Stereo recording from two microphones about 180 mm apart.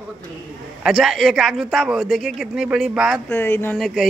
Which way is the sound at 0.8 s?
Centre (ahead or behind).